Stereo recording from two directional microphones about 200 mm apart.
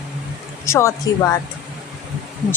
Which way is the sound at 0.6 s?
15° left (ahead or behind).